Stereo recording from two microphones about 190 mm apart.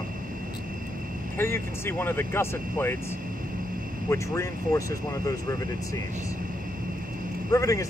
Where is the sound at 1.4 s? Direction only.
10° left (ahead or behind).